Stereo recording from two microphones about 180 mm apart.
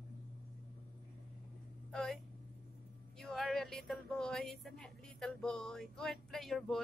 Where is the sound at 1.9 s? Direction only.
Centre (ahead or behind).